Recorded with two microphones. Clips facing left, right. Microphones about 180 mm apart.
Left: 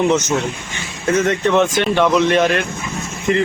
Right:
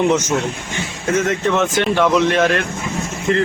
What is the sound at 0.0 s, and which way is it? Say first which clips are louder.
A man's voice: even; 10° right (ahead or behind).